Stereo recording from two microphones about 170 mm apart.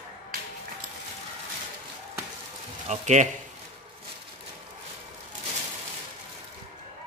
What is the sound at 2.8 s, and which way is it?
Speech, 40° right (ahead or behind).